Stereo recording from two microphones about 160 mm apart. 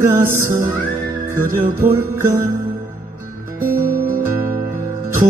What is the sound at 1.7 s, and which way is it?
Music, 15° right (ahead or behind).